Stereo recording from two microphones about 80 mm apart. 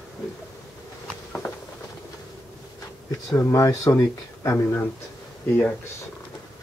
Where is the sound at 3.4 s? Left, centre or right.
Left.